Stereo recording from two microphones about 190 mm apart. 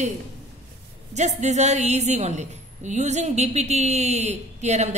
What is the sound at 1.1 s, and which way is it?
A woman's voice, 35° right (ahead or behind).